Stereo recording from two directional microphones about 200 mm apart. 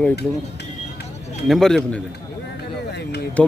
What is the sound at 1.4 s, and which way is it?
Speech, centre (ahead or behind).